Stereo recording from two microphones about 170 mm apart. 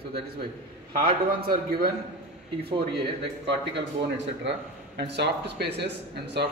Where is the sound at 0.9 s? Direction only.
60° right (ahead or behind).